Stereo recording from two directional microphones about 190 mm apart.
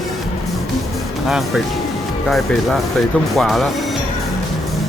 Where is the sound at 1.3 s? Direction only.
Centre (ahead or behind).